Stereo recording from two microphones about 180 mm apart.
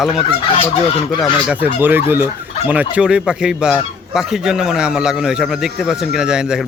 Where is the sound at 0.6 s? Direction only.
30° left (ahead or behind).